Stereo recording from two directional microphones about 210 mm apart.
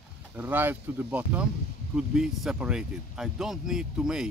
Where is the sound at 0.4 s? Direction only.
10° right (ahead or behind).